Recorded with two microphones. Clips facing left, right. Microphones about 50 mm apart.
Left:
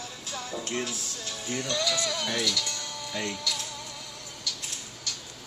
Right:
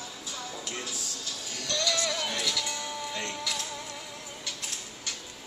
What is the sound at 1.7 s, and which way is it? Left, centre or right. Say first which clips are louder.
Music: right 1 dB; centre.